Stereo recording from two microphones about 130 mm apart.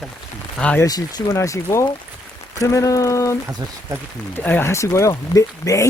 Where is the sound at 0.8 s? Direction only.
30° left (ahead or behind).